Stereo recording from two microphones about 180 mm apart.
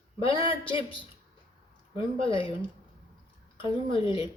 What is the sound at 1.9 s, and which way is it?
Speech, 30° left (ahead or behind).